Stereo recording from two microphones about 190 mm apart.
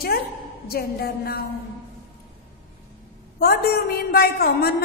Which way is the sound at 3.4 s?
55° left (ahead or behind).